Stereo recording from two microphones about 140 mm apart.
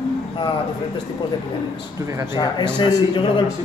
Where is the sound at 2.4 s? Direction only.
30° left (ahead or behind).